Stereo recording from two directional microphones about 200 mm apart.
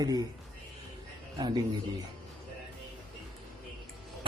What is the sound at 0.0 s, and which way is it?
Speech, 20° right (ahead or behind).